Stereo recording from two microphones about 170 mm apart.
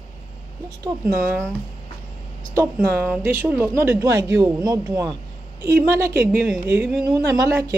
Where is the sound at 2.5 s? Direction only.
15° right (ahead or behind).